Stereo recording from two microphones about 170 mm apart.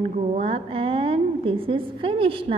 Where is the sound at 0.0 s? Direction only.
40° right (ahead or behind).